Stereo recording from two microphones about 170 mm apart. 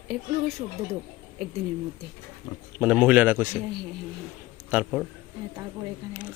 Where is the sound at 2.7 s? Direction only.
5° right (ahead or behind).